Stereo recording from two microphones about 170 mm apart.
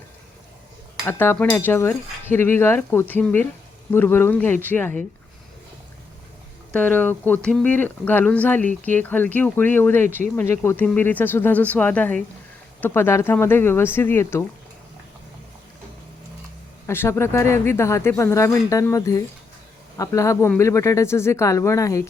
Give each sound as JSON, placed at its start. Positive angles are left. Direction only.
{"t": 1.0, "sound": "speech", "side_deg": 10}
{"t": 6.7, "sound": "speech", "side_deg": 10}
{"t": 16.8, "sound": "speech", "side_deg": 15}